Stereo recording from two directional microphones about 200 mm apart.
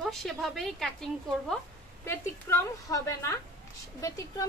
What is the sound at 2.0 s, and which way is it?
A woman's voice, 10° left (ahead or behind).